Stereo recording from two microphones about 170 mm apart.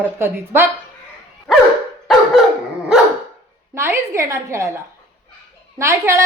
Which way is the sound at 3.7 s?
15° right (ahead or behind).